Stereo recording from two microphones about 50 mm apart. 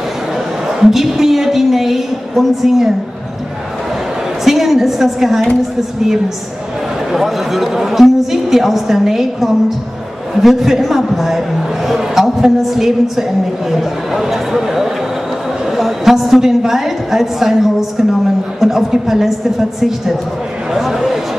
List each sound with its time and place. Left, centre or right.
0.7 s a woman's voice: centre
4.5 s a woman's voice: centre
7.1 s a woman's voice: centre
20.7 s a sound: centre